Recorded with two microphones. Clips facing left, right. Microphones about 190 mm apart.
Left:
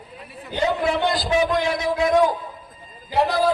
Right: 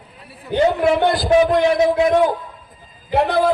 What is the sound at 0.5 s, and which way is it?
A man's voice, 60° right (ahead or behind).